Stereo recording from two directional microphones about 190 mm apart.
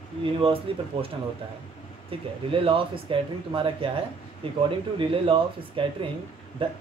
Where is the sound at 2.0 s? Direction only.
30° right (ahead or behind).